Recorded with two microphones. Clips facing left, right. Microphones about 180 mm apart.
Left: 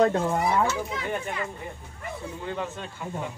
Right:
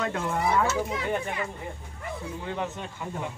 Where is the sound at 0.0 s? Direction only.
35° left (ahead or behind).